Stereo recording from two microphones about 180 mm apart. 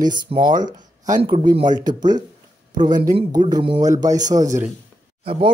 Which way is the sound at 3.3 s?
20° right (ahead or behind).